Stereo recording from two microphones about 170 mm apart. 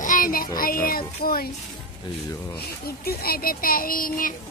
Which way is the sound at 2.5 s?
65° left (ahead or behind).